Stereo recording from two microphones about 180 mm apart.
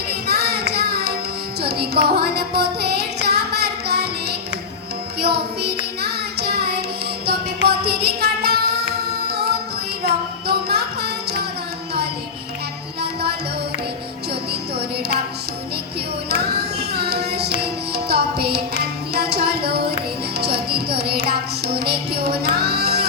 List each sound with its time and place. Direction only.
0.3 s child singing: 65° right (ahead or behind)
1.6 s music: 60° right (ahead or behind)
6.0 s child singing: 65° right (ahead or behind)
7.3 s music: 60° right (ahead or behind)
14.8 s music: 60° right (ahead or behind)
16.3 s music: 65° right (ahead or behind)